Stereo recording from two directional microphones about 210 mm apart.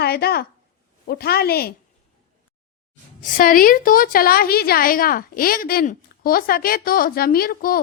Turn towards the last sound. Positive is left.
turn(degrees=45)  # may be behind; listen again after turning